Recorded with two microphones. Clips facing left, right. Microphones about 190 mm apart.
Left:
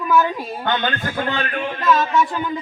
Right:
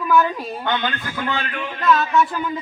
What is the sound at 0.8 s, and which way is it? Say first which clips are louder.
Speech: left 2 dB; 45° left (ahead or behind).